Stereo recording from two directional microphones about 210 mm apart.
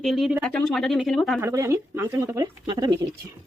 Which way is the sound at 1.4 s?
15° right (ahead or behind).